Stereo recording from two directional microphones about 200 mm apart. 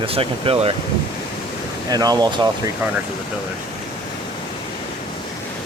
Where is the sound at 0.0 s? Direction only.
30° right (ahead or behind).